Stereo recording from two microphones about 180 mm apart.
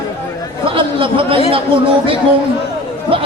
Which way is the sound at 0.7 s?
30° right (ahead or behind).